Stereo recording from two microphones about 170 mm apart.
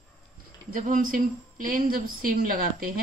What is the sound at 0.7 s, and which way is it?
A woman's voice, 50° right (ahead or behind).